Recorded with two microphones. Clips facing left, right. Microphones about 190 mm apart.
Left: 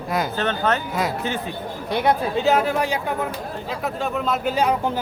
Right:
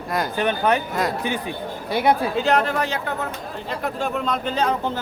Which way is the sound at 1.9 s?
5° right (ahead or behind).